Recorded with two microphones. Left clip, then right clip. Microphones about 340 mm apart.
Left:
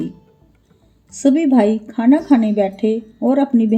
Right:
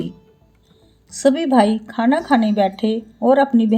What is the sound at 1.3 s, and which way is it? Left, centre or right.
Speech, right.